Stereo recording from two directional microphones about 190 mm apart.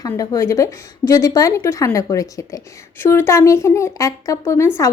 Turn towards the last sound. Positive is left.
turn(degrees=15)  # may be behind; listen again after turning